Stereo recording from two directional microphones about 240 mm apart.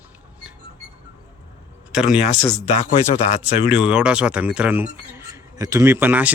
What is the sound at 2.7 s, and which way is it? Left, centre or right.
Speech, left.